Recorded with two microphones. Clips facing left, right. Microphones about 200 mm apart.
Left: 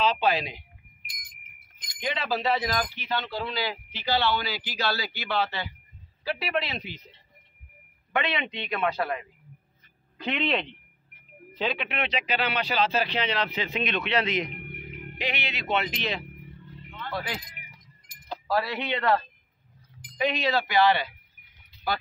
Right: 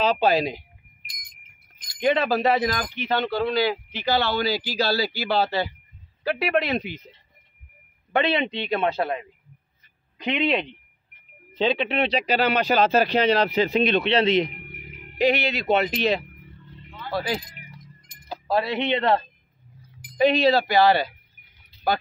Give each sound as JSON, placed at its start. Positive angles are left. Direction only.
{"t": 0.0, "sound": "speech", "side_deg": -40}
{"t": 1.0, "sound": "wind chime", "side_deg": 0}
{"t": 2.0, "sound": "speech", "side_deg": -50}
{"t": 6.2, "sound": "speech", "side_deg": -55}
{"t": 8.1, "sound": "speech", "side_deg": -30}
{"t": 10.1, "sound": "speech", "side_deg": -15}
{"t": 11.5, "sound": "speech", "side_deg": -30}
{"t": 14.6, "sound": "music", "side_deg": 55}
{"t": 15.1, "sound": "speech", "side_deg": -40}
{"t": 17.1, "sound": "speech", "side_deg": -35}
{"t": 18.5, "sound": "speech", "side_deg": -20}